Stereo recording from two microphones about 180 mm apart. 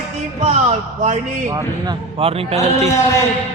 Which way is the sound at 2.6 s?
15° left (ahead or behind).